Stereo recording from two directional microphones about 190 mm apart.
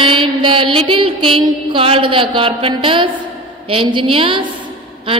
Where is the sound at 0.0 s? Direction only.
25° right (ahead or behind).